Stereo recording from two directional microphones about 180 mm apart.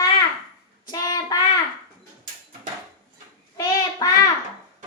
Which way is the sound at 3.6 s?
20° left (ahead or behind).